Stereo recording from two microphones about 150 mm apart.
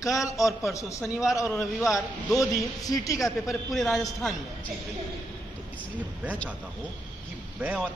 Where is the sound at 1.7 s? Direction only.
Centre (ahead or behind).